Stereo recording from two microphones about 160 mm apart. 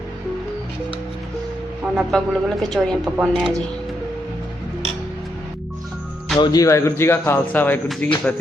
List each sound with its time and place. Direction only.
1.8 s a woman's voice: 5° right (ahead or behind)
6.4 s speech: 20° left (ahead or behind)